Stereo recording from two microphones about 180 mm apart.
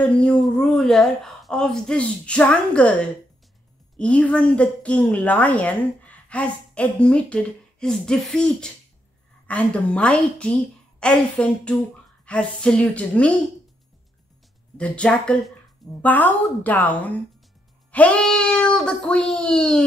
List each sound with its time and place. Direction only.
0.0 s a woman's voice: 5° left (ahead or behind)
14.8 s a woman's voice: 5° left (ahead or behind)